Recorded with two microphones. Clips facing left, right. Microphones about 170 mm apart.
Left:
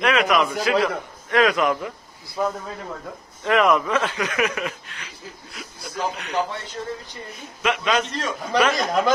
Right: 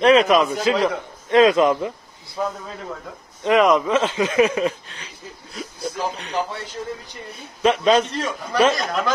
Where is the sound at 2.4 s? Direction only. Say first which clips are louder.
Left 1 dB; 5° left (ahead or behind).